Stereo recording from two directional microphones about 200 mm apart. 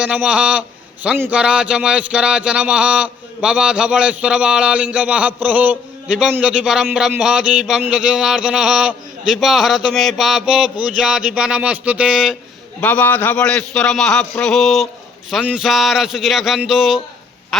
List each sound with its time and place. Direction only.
0.0 s a man's voice: 5° right (ahead or behind)
12.8 s a man's voice: 10° left (ahead or behind)